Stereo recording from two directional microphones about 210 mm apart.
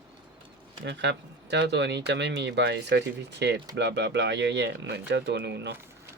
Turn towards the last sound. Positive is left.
turn(degrees=-55)  # may be behind; listen again after turning